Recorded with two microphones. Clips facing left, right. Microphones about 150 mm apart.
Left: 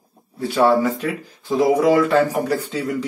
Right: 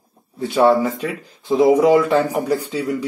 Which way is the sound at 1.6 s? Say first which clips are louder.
Right 2 dB; 15° right (ahead or behind).